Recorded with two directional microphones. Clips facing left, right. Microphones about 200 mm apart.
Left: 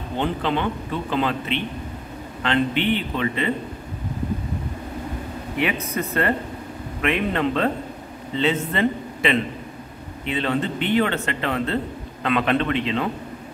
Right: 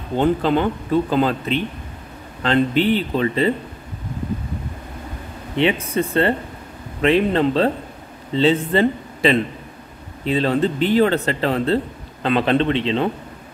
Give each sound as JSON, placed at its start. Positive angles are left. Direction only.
{"t": 0.2, "sound": "a man's voice", "side_deg": -40}
{"t": 5.6, "sound": "a man's voice", "side_deg": -30}